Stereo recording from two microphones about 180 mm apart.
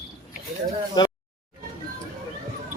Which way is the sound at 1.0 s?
25° left (ahead or behind).